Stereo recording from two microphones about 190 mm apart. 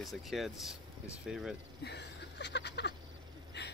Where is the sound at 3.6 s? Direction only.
60° left (ahead or behind).